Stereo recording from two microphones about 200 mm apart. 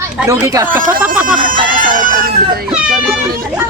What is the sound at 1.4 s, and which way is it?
Music, 45° right (ahead or behind).